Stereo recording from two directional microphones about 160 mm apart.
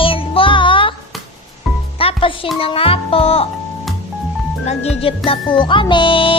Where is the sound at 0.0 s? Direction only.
35° left (ahead or behind).